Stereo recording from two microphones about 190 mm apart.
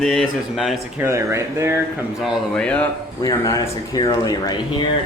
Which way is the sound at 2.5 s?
5° left (ahead or behind).